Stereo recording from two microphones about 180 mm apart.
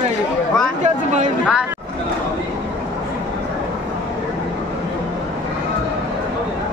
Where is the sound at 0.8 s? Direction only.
40° right (ahead or behind).